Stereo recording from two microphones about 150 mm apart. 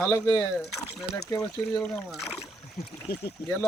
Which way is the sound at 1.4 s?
5° left (ahead or behind).